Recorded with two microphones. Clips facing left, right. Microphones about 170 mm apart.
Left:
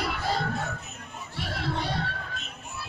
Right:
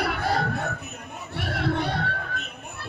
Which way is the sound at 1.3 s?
60° right (ahead or behind).